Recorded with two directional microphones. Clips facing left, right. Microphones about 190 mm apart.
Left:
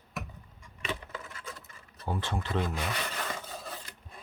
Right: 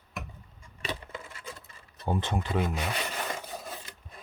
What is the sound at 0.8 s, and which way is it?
Coin, 30° right (ahead or behind).